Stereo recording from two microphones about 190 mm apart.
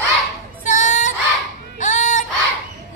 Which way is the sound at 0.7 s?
40° left (ahead or behind).